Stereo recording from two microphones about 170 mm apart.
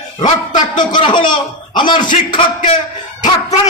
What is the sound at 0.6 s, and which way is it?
A man's voice, 25° left (ahead or behind).